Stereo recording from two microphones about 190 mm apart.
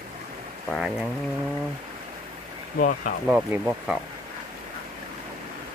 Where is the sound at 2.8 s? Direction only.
45° left (ahead or behind).